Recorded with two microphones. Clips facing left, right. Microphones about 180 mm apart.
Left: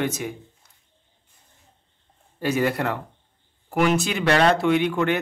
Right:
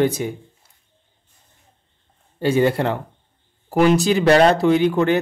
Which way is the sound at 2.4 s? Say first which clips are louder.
Right 5 dB; 30° right (ahead or behind).